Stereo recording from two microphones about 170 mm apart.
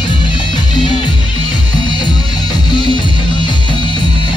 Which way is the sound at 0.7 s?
30° left (ahead or behind).